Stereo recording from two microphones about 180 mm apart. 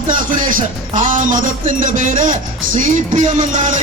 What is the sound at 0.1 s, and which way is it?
A man's voice, 50° right (ahead or behind).